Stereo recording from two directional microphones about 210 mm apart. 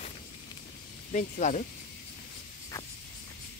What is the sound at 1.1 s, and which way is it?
Speech, 35° left (ahead or behind).